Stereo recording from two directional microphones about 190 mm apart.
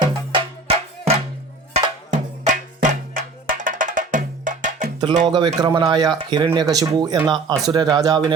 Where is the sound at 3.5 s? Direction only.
45° right (ahead or behind).